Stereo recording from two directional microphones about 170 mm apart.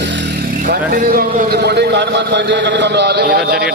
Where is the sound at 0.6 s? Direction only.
55° right (ahead or behind).